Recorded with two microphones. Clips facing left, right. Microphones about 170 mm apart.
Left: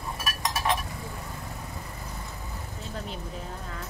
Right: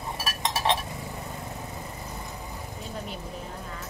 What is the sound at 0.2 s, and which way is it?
Chink, 25° right (ahead or behind).